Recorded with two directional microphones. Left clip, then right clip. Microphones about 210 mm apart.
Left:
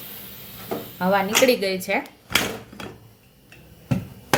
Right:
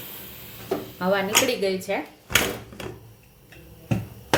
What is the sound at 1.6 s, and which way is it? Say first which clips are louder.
Speech: left 1 dB; 30° left (ahead or behind).